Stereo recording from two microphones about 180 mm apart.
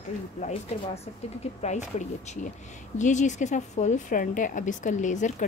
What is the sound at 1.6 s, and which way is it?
A woman's voice, 40° left (ahead or behind).